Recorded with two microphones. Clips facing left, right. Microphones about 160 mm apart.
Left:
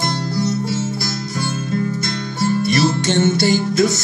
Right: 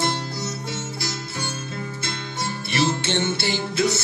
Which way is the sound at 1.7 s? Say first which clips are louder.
Left 10 dB; 40° left (ahead or behind).